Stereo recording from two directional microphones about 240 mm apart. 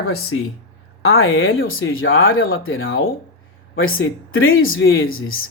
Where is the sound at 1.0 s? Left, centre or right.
Left.